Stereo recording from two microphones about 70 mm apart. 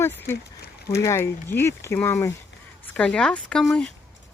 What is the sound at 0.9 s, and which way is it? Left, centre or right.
Speech, left.